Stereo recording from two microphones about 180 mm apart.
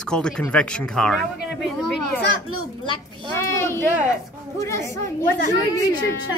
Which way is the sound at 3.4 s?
15° left (ahead or behind).